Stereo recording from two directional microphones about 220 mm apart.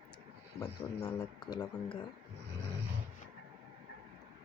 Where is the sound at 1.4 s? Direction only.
20° left (ahead or behind).